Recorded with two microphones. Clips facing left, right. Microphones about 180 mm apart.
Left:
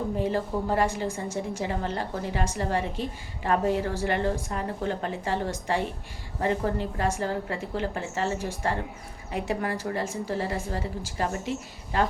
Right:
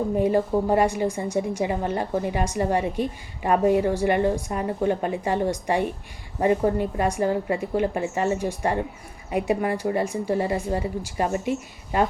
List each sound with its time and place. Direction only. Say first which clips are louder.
0.2 s a woman's voice: right 8 dB; 15° right (ahead or behind)